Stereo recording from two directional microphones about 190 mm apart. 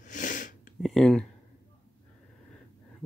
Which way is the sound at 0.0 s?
40° left (ahead or behind).